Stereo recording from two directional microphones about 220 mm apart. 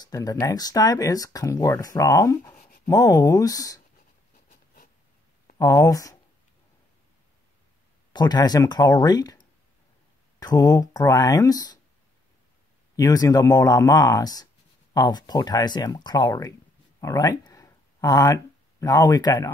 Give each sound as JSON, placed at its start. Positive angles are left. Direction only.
{"t": 0.0, "sound": "speech", "side_deg": 15}
{"t": 5.6, "sound": "speech", "side_deg": 15}
{"t": 8.1, "sound": "speech", "side_deg": 20}
{"t": 12.9, "sound": "speech", "side_deg": 15}